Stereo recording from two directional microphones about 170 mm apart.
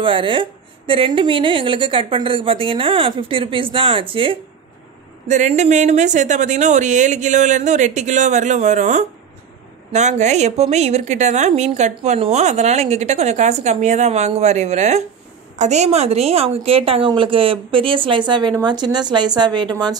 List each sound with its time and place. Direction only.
0.0 s a woman's voice: 30° right (ahead or behind)
5.3 s a woman's voice: 45° right (ahead or behind); by 19.7 s 25° right (ahead or behind)